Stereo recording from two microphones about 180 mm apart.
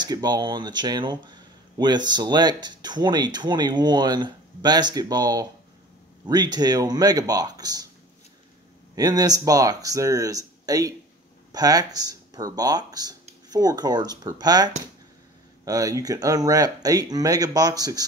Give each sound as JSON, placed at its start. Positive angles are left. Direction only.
{"t": 0.0, "sound": "speech", "side_deg": -25}
{"t": 8.9, "sound": "speech", "side_deg": -20}